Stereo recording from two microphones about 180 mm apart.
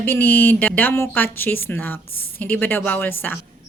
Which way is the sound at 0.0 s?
10° left (ahead or behind).